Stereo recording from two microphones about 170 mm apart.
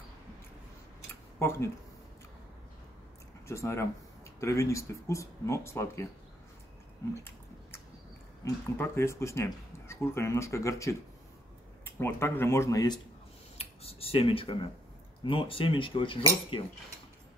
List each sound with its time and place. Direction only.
1.4 s speech: 15° left (ahead or behind)
3.4 s speech: 15° left (ahead or behind)
8.4 s speech: 20° left (ahead or behind)
13.6 s speech: 35° left (ahead or behind)